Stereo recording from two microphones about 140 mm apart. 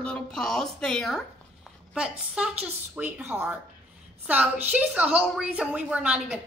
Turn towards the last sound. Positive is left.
turn(degrees=-10)  # may be behind; listen again after turning